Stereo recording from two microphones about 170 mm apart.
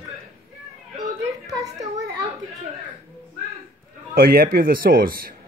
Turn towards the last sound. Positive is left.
turn(degrees=-60)  # may be behind; listen again after turning